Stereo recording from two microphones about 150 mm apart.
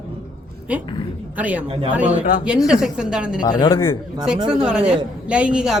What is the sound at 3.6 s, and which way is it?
Speech, 35° left (ahead or behind).